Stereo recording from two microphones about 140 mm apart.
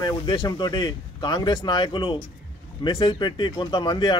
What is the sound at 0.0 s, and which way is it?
Speech, 30° left (ahead or behind).